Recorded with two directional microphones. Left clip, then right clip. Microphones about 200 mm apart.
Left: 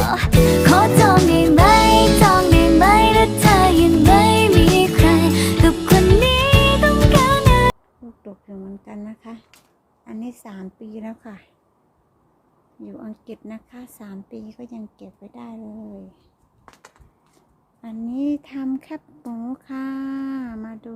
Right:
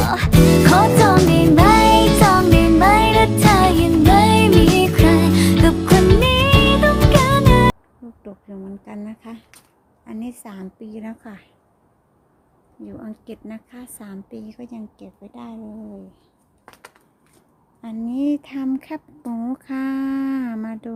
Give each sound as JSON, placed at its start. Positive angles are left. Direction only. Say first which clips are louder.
{"t": 0.0, "sound": "music", "louder": "even", "side_deg": 0}
{"t": 8.2, "sound": "a sound", "louder": "right 1 dB", "side_deg": 0}
{"t": 10.0, "sound": "a woman's voice", "louder": "right 1 dB", "side_deg": 0}
{"t": 12.8, "sound": "a woman's voice", "louder": "right 1 dB", "side_deg": 0}
{"t": 16.6, "sound": "a sound", "louder": "right 3 dB", "side_deg": -15}
{"t": 17.8, "sound": "speech", "louder": "right 2 dB", "side_deg": -10}